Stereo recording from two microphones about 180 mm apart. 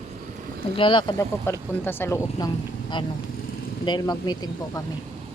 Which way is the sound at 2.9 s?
25° left (ahead or behind).